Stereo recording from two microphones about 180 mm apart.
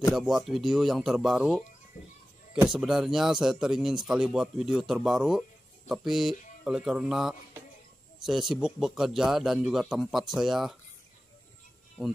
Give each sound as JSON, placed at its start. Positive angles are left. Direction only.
{"t": 0.1, "sound": "speech", "side_deg": 0}
{"t": 2.7, "sound": "speech", "side_deg": 0}